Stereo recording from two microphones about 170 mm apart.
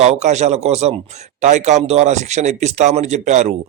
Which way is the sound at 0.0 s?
40° right (ahead or behind).